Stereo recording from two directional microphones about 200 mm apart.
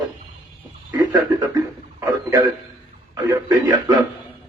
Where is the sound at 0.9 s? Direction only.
20° right (ahead or behind).